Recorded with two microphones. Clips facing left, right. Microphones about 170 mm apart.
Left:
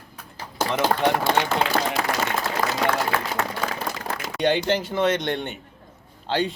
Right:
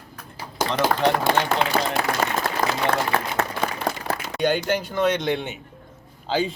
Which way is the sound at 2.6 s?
45° right (ahead or behind).